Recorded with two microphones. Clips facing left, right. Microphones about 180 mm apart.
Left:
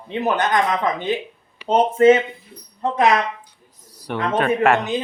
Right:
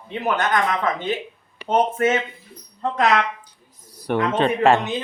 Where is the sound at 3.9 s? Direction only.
50° right (ahead or behind).